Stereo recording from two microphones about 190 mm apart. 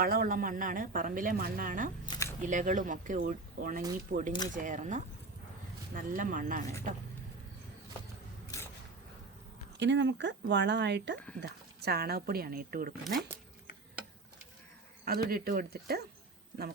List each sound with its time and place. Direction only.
0.0 s speech: 50° right (ahead or behind)
2.0 s camera: 15° left (ahead or behind)
2.4 s speech: 40° right (ahead or behind)
8.4 s a sound: 15° left (ahead or behind)
9.7 s speech: 70° right (ahead or behind); by 13.1 s 50° right (ahead or behind)
15.0 s speech: 50° right (ahead or behind)